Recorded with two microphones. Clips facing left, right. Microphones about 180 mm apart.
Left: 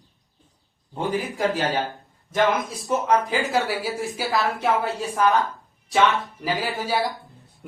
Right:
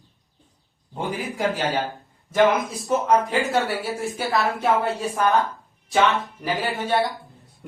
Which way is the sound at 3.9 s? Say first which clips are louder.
Right 1 dB; centre (ahead or behind).